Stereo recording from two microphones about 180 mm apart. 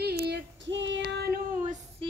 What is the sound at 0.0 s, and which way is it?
Female singing, 65° right (ahead or behind).